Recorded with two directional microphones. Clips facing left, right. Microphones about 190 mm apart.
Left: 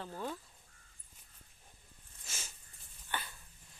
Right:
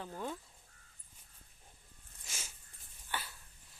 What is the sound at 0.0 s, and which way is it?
Crow, 15° right (ahead or behind).